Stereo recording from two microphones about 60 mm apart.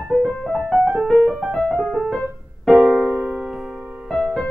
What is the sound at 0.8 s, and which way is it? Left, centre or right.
Music, centre.